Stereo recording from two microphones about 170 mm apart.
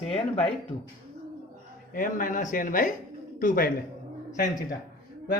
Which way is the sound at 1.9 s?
55° left (ahead or behind).